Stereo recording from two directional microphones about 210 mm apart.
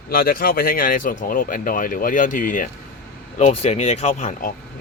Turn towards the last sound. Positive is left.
turn(degrees=35)  # may be behind; listen again after turning